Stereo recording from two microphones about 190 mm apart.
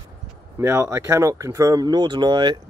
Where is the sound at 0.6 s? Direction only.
15° right (ahead or behind).